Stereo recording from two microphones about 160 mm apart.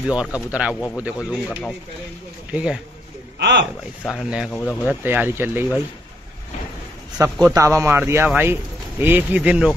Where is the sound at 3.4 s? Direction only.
90° right.